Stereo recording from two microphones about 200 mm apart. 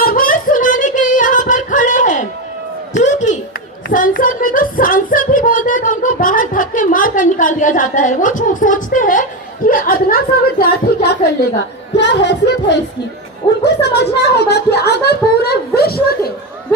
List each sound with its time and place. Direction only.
0.0 s female singing: 45° left (ahead or behind)
2.9 s a sound: 35° left (ahead or behind)
3.8 s child singing: 45° left (ahead or behind)
9.6 s speech: 45° left (ahead or behind)
11.9 s music: 60° left (ahead or behind)
13.7 s speech: 55° left (ahead or behind)